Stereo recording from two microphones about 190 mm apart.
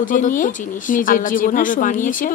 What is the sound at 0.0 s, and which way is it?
A woman's voice, 45° left (ahead or behind).